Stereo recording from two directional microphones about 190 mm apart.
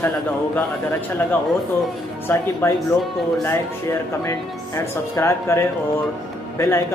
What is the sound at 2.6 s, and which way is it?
Speech, 15° left (ahead or behind).